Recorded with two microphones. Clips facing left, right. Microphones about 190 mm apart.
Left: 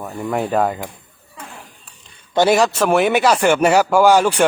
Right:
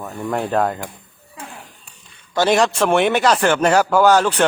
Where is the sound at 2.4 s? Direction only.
5° left (ahead or behind).